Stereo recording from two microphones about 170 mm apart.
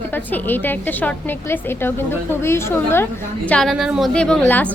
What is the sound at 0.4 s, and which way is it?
A woman's voice, 10° left (ahead or behind).